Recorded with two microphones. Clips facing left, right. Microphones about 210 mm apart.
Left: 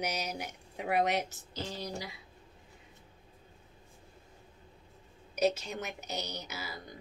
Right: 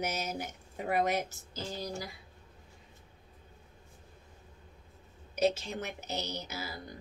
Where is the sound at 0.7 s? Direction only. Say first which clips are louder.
Even; centre (ahead or behind).